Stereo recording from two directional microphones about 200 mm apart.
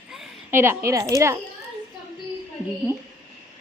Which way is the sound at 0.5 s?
10° right (ahead or behind).